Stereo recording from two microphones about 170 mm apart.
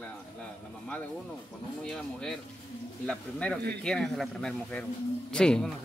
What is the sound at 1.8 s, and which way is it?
Speech, 5° left (ahead or behind).